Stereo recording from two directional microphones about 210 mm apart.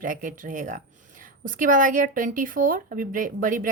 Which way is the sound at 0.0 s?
40° right (ahead or behind).